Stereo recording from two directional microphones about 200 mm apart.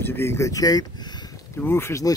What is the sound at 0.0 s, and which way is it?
Speech, 10° left (ahead or behind).